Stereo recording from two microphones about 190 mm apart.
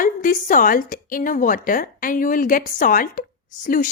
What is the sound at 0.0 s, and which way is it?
A woman's voice, 45° left (ahead or behind).